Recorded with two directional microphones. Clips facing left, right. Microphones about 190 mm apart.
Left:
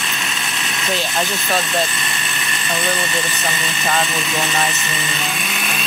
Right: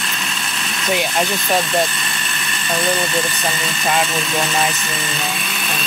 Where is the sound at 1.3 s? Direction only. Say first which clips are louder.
Right 2 dB; centre (ahead or behind).